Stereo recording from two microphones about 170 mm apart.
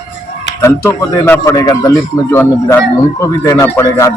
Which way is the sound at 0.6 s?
15° left (ahead or behind).